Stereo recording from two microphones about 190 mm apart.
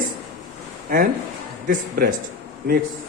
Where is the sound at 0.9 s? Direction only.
45° right (ahead or behind).